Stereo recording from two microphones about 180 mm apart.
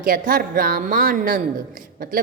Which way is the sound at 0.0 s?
50° right (ahead or behind).